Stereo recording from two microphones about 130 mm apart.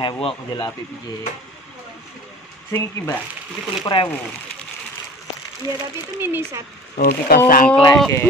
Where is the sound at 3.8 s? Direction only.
40° left (ahead or behind).